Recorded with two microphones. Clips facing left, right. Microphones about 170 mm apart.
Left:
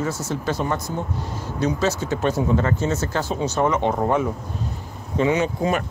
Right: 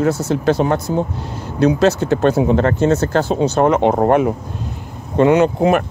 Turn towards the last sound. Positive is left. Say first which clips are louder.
# right 8 dB
turn(degrees=-60)  # may be behind; listen again after turning